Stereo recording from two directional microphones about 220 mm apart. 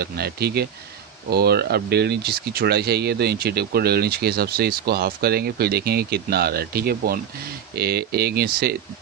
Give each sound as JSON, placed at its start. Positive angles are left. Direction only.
{"t": 0.0, "sound": "speech", "side_deg": -45}